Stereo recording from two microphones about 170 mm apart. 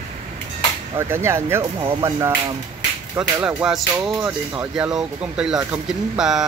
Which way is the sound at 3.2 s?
5° right (ahead or behind).